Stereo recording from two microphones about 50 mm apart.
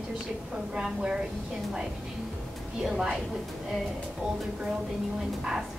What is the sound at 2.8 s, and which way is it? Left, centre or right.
Speech, centre.